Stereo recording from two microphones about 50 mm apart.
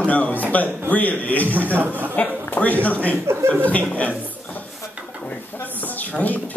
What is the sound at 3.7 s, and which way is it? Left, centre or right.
Speech, left.